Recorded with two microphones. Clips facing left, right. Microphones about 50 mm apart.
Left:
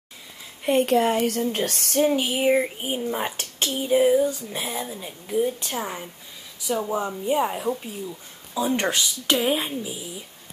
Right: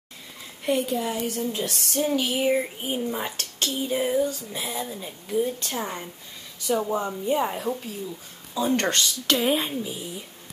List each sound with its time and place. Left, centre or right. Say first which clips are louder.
0.8 s speech: left 7 dB; left
1.5 s speech: left 3 dB; left
2.0 s speech: left 1 dB; centre
3.8 s a woman's voice: left 6 dB; centre
4.5 s a woman's voice: left 1 dB; left; by 10.0 s centre